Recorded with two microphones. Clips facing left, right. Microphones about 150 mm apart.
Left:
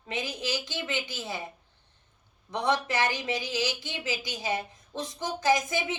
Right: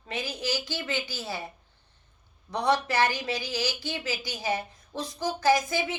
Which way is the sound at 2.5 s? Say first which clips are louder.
Right 2 dB; 20° left (ahead or behind).